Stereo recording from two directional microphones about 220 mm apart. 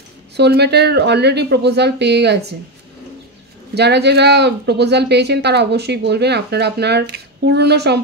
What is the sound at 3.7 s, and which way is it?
Speech, 50° right (ahead or behind).